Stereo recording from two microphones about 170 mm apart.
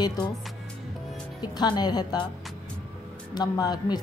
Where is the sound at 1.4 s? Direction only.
25° left (ahead or behind).